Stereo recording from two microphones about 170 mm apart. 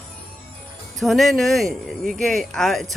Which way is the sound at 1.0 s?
Centre (ahead or behind).